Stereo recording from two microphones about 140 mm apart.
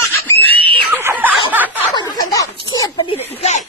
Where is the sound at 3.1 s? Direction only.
50° left (ahead or behind).